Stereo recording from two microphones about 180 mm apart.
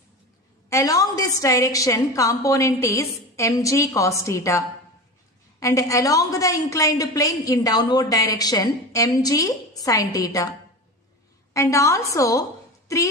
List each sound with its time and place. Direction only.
0.7 s a woman's voice: 15° left (ahead or behind)
11.5 s a woman's voice: 15° left (ahead or behind)